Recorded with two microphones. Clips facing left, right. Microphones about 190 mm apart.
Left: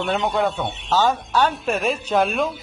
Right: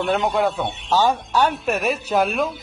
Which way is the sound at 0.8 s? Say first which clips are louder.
Right 1 dB; 15° right (ahead or behind).